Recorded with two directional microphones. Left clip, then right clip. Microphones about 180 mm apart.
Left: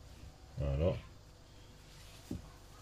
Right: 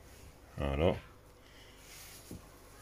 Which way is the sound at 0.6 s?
45° right (ahead or behind).